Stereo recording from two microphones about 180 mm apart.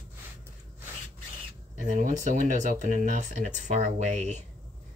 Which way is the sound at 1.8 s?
45° right (ahead or behind).